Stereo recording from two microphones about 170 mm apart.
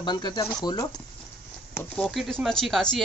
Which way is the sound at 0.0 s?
25° left (ahead or behind).